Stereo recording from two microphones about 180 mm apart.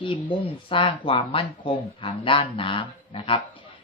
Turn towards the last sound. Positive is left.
turn(degrees=30)  # may be behind; listen again after turning